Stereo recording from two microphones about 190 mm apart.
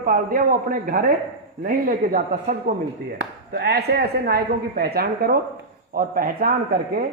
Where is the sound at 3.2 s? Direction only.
60° right (ahead or behind).